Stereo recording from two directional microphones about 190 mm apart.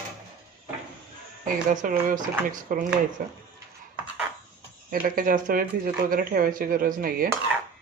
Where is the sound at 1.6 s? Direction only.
45° right (ahead or behind).